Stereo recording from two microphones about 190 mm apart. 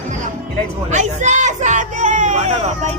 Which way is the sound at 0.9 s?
40° right (ahead or behind).